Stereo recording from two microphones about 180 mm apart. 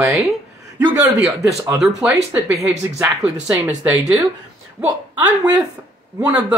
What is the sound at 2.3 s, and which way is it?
Speech, 15° right (ahead or behind).